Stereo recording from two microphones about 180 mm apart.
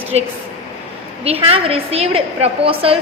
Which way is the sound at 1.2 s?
35° right (ahead or behind).